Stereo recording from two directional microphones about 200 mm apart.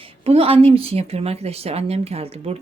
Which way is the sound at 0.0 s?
30° right (ahead or behind).